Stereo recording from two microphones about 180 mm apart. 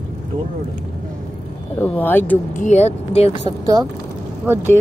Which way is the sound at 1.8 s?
10° left (ahead or behind).